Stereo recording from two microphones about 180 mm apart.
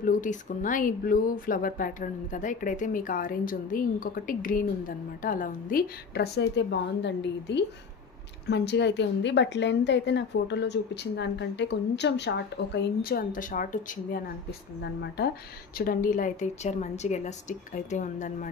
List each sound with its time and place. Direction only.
0.0 s a woman's voice: 45° left (ahead or behind)
14.8 s a woman's voice: 70° left (ahead or behind)
15.8 s speech: 50° left (ahead or behind)